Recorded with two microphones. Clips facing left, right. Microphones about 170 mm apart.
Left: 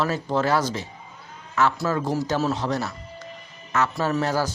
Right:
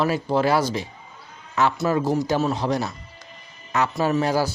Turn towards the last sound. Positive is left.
turn(degrees=-10)  # may be behind; listen again after turning